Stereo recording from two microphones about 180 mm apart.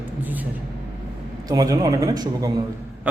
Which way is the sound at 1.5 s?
20° right (ahead or behind).